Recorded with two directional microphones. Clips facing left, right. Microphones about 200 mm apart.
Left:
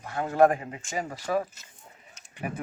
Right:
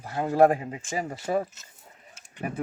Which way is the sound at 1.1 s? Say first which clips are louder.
Right 1 dB; 25° right (ahead or behind).